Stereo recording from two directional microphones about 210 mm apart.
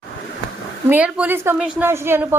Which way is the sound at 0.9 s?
5° right (ahead or behind).